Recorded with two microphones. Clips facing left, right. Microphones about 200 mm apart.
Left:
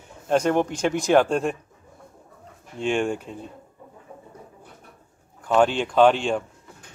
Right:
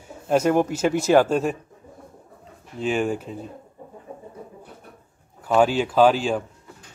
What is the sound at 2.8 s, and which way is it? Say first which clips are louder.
Speech: even; 5° right (ahead or behind).